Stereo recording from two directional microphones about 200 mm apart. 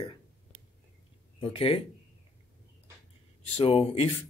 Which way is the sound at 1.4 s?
25° left (ahead or behind).